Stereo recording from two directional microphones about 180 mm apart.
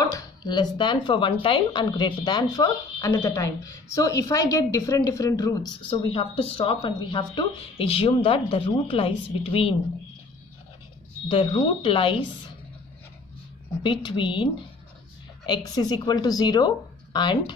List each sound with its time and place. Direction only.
0.0 s speech: 20° left (ahead or behind)
5.8 s speech: 30° left (ahead or behind)
11.2 s speech: 30° left (ahead or behind)
13.8 s speech: 25° left (ahead or behind)